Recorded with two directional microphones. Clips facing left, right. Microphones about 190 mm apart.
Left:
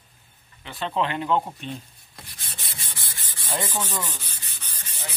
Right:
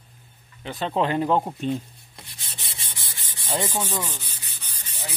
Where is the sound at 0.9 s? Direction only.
40° right (ahead or behind).